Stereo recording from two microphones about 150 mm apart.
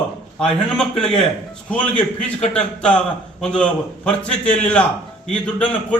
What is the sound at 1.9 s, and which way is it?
Speech, 45° left (ahead or behind).